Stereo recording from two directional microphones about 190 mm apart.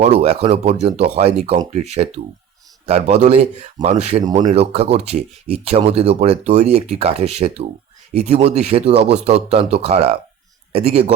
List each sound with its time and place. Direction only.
0.0 s speech: 35° right (ahead or behind)